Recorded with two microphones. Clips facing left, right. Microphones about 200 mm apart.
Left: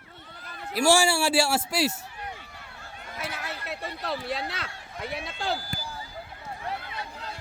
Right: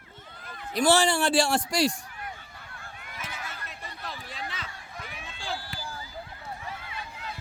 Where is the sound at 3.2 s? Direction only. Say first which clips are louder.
Left 5 dB; 70° left (ahead or behind).